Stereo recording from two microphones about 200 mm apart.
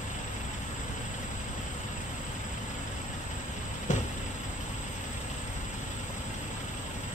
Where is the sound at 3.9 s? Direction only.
35° left (ahead or behind).